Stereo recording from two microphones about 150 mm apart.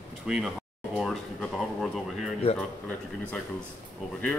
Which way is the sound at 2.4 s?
40° left (ahead or behind).